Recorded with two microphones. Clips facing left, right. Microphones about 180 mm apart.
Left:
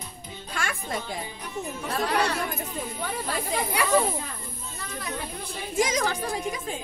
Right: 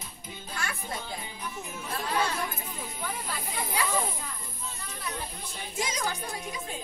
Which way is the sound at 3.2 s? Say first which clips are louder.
Left 7 dB; 80° left.